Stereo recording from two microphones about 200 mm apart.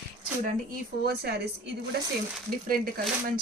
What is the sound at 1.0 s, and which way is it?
Speech, 55° right (ahead or behind).